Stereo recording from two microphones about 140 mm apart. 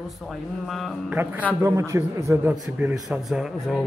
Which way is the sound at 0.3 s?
Centre (ahead or behind).